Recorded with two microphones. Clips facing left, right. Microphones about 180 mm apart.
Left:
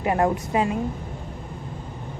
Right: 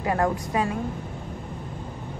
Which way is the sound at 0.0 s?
20° left (ahead or behind).